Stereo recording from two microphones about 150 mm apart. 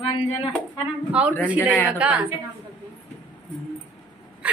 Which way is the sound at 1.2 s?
10° right (ahead or behind).